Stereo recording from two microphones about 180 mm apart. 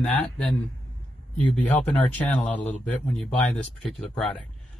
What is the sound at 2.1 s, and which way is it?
Speech, 10° left (ahead or behind).